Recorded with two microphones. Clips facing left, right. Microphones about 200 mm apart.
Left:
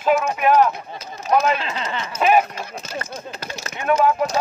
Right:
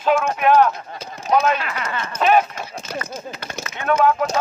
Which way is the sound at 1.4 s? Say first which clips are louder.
Even; 25° left (ahead or behind).